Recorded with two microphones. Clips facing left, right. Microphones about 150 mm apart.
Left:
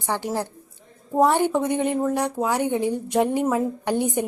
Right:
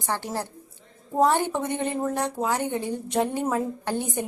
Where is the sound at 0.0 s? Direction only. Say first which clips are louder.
Left 3 dB; 15° left (ahead or behind).